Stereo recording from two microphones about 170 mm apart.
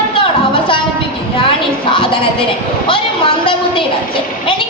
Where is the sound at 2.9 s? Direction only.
30° left (ahead or behind).